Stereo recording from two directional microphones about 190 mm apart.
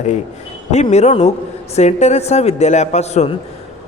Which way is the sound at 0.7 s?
35° left (ahead or behind).